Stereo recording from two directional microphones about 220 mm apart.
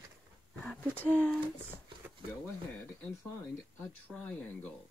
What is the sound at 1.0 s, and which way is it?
Speech, 5° left (ahead or behind).